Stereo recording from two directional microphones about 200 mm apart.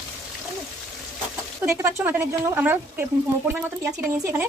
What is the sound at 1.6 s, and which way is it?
Speech, 10° right (ahead or behind).